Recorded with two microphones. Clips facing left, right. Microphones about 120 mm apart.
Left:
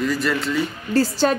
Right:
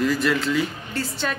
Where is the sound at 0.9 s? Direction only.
35° left (ahead or behind).